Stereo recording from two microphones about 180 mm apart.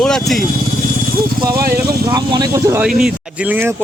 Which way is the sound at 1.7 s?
20° right (ahead or behind).